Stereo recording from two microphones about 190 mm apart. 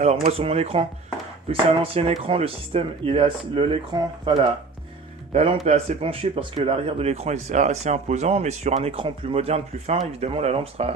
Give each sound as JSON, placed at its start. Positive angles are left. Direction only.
{"t": 0.0, "sound": "speech", "side_deg": -35}